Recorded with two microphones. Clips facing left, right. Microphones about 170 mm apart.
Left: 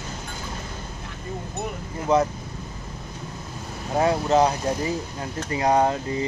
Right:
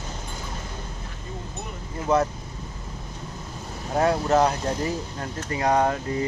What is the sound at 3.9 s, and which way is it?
Speech, 15° left (ahead or behind).